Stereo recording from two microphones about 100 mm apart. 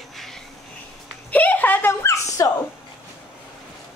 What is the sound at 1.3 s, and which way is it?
Speech, 15° left (ahead or behind).